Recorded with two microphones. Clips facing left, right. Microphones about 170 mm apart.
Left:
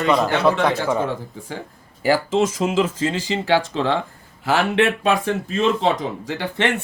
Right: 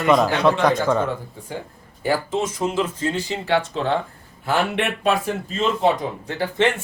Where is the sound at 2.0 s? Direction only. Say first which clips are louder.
Left 4 dB; 90° left.